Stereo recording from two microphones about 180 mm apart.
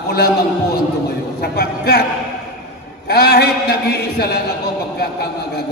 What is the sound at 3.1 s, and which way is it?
A man's voice, 60° left (ahead or behind).